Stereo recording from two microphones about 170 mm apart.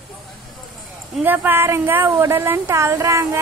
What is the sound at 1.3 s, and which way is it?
A woman's voice, 10° right (ahead or behind).